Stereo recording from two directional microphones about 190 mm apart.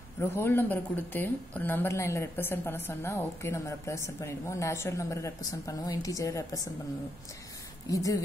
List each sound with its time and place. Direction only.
0.2 s speech: 10° left (ahead or behind)
7.9 s speech: 15° left (ahead or behind)